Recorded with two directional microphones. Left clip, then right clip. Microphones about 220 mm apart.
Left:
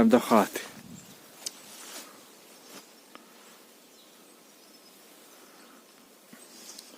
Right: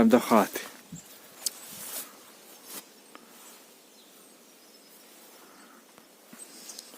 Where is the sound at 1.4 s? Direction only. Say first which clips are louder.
Right 4 dB; 40° right (ahead or behind).